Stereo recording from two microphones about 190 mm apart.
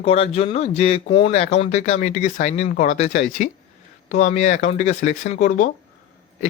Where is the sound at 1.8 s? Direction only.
40° left (ahead or behind).